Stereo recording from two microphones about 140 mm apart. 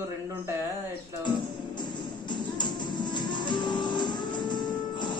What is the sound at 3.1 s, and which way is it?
Music, 30° left (ahead or behind).